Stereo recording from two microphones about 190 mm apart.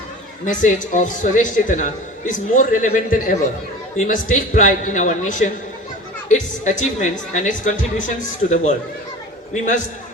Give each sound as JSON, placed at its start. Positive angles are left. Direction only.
{"t": 0.4, "sound": "a man's voice", "side_deg": 40}